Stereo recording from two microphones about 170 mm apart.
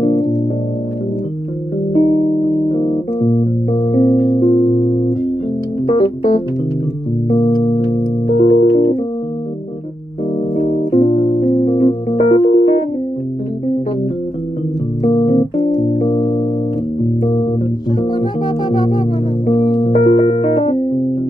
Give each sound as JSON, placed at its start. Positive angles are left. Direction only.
{"t": 3.2, "sound": "music", "side_deg": 35}
{"t": 5.9, "sound": "organ", "side_deg": 35}
{"t": 7.2, "sound": "music", "side_deg": 30}
{"t": 8.4, "sound": "organ", "side_deg": 40}
{"t": 10.5, "sound": "music", "side_deg": 35}
{"t": 15.1, "sound": "keyboard", "side_deg": 40}
{"t": 16.0, "sound": "music", "side_deg": 35}
{"t": 18.7, "sound": "music", "side_deg": 25}